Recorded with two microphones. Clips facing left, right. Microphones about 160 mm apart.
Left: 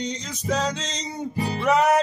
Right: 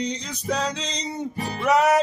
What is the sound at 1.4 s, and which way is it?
Music, 30° left (ahead or behind).